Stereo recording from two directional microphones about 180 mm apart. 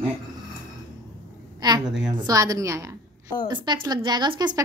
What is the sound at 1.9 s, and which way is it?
Speech, 5° right (ahead or behind).